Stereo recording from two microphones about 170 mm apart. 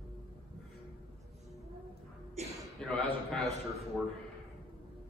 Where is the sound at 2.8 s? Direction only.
5° left (ahead or behind).